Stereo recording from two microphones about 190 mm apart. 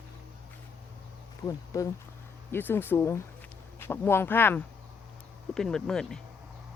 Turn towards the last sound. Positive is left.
turn(degrees=5)  # may be behind; listen again after turning